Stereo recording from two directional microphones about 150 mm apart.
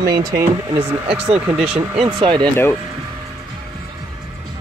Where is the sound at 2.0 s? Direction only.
30° right (ahead or behind).